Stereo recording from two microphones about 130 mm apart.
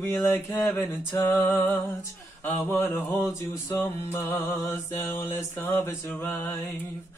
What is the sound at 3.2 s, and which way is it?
Mantra, 20° left (ahead or behind).